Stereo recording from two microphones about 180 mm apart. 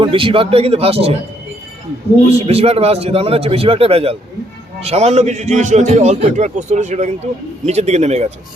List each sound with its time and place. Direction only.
0.0 s a man's voice: 30° right (ahead or behind)
2.5 s a man's voice: 35° right (ahead or behind)